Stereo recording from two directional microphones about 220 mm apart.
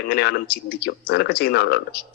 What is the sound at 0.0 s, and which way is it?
A man's voice, 45° left (ahead or behind).